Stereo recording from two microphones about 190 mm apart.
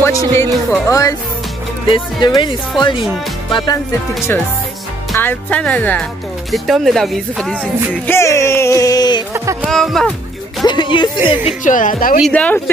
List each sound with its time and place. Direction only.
0.0 s music: 15° left (ahead or behind)
1.9 s speech: 20° left (ahead or behind)
3.5 s speech: 20° left (ahead or behind)
5.1 s music: 10° left (ahead or behind)
9.3 s music: 15° right (ahead or behind)
9.7 s speech: centre (ahead or behind)
10.6 s speech: 25° left (ahead or behind)
11.4 s speech: 45° left (ahead or behind)
12.3 s music: 5° left (ahead or behind)